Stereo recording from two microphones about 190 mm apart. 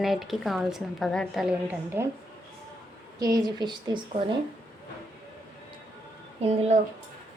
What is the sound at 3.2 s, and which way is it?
Speech, 20° right (ahead or behind).